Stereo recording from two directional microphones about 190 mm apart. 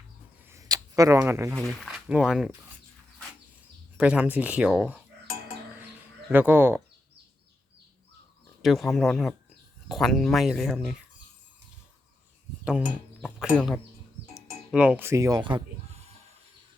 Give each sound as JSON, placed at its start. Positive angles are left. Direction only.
{"t": 0.4, "sound": "a sound", "side_deg": -15}
{"t": 1.5, "sound": "speech", "side_deg": 0}
{"t": 3.9, "sound": "speech", "side_deg": -5}
{"t": 6.3, "sound": "speech", "side_deg": -10}
{"t": 8.6, "sound": "speech", "side_deg": 0}
{"t": 12.6, "sound": "speech", "side_deg": -5}
{"t": 14.3, "sound": "sheep", "side_deg": -5}